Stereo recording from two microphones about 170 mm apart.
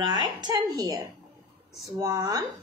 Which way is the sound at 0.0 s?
25° right (ahead or behind).